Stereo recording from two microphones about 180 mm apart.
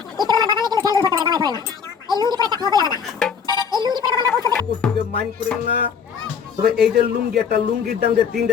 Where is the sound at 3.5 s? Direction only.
25° right (ahead or behind).